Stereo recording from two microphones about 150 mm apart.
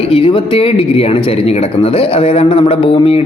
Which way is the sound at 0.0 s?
35° left (ahead or behind).